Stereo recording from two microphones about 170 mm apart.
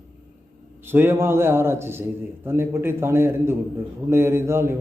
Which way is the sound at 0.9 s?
15° right (ahead or behind).